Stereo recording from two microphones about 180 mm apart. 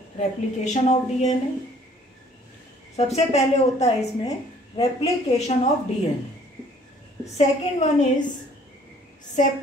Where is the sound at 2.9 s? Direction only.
35° left (ahead or behind).